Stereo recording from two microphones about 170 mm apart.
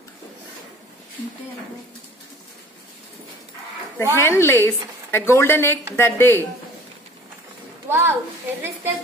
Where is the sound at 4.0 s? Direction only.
15° left (ahead or behind).